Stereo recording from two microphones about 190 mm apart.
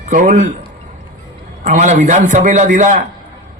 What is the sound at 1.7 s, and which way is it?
A man's voice, 40° right (ahead or behind).